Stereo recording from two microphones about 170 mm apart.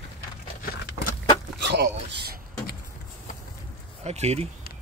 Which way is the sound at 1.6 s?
80° right.